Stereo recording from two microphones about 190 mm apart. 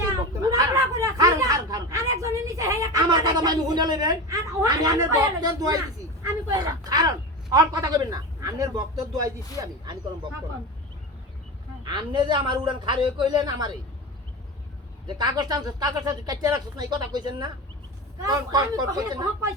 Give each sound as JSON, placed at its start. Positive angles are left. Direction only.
{"t": 0.3, "sound": "a sound", "side_deg": -20}
{"t": 7.5, "sound": "speech", "side_deg": -20}
{"t": 11.8, "sound": "speech", "side_deg": -25}
{"t": 15.0, "sound": "speech", "side_deg": -20}